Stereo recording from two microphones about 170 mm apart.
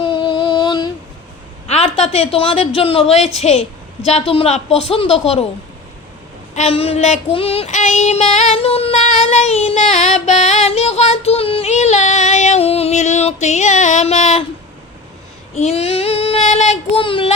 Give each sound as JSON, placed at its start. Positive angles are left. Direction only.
{"t": 0.0, "sound": "a sound", "side_deg": 30}
{"t": 1.6, "sound": "a woman's voice", "side_deg": 35}
{"t": 6.5, "sound": "child singing", "side_deg": 40}
{"t": 15.5, "sound": "speech", "side_deg": 40}